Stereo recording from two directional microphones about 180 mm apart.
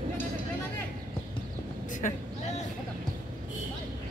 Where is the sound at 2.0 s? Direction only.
45° left (ahead or behind).